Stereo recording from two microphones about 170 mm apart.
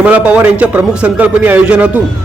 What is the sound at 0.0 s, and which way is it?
A man's voice, 10° right (ahead or behind).